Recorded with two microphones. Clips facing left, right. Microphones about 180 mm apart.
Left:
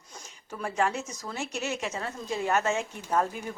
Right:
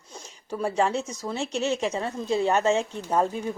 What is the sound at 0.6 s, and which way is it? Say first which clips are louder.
A woman's voice: right 4 dB; 30° right (ahead or behind).